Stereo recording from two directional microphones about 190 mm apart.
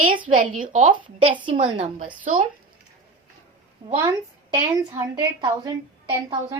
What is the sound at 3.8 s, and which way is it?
A woman's voice, 25° right (ahead or behind).